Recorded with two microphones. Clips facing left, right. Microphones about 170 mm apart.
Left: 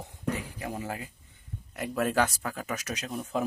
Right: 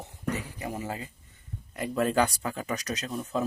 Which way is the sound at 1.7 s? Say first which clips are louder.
Right 2 dB; 5° left (ahead or behind).